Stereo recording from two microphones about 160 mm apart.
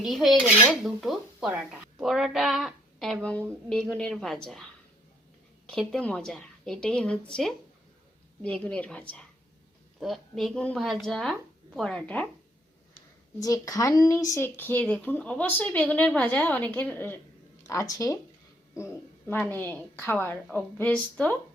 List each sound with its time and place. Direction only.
0.0 s a woman's voice: centre (ahead or behind)
5.6 s a woman's voice: 5° left (ahead or behind)
13.4 s speech: 20° left (ahead or behind)